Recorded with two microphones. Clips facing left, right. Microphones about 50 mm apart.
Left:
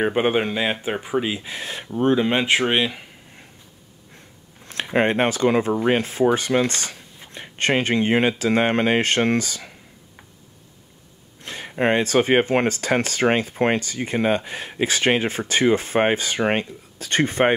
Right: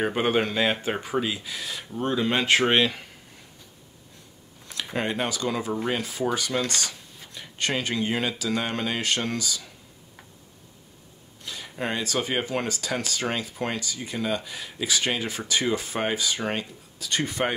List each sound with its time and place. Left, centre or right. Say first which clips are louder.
0.0 s speech: left 4 dB; left
1.5 s speech: left 4 dB; left; by 3.1 s centre
4.9 s speech: left 8 dB; left
11.4 s speech: left 9 dB; left